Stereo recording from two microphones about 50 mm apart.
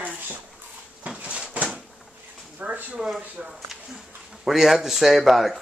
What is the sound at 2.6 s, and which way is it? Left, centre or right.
Speech, right.